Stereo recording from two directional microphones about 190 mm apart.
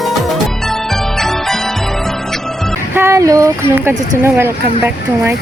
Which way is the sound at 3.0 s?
15° right (ahead or behind).